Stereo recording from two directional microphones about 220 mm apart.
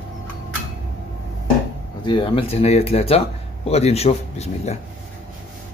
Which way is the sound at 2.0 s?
20° left (ahead or behind).